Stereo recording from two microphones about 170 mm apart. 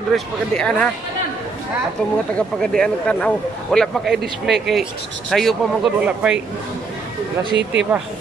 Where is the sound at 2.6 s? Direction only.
5° left (ahead or behind).